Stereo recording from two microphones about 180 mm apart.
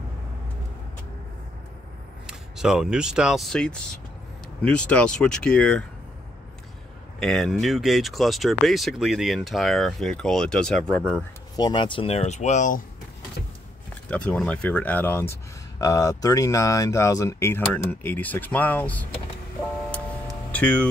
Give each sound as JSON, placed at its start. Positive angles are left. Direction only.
{"t": 2.2, "sound": "speech", "side_deg": -5}
{"t": 7.2, "sound": "speech", "side_deg": 0}
{"t": 11.5, "sound": "speech", "side_deg": 25}
{"t": 14.0, "sound": "speech", "side_deg": 5}
{"t": 19.9, "sound": "music", "side_deg": 5}